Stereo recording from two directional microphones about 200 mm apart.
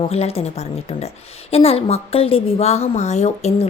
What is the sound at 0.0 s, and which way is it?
A woman's voice, 30° left (ahead or behind).